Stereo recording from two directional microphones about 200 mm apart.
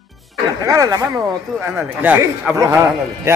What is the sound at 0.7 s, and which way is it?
Speech, 20° right (ahead or behind).